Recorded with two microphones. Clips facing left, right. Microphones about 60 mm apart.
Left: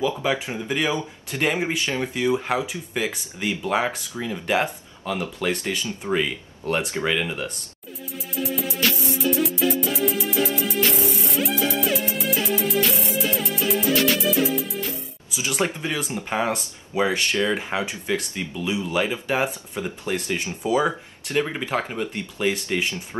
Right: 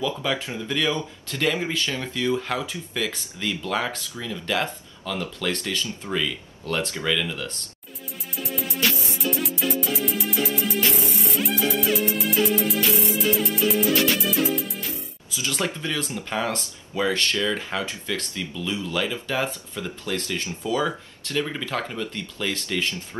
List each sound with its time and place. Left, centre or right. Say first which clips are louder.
0.0 s speech: left 3 dB; left
8.4 s music: left 2 dB; centre
15.3 s speech: left 2 dB; left